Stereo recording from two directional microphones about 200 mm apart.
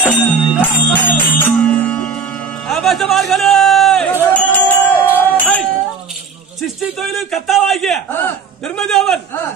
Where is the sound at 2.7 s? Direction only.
Centre (ahead or behind).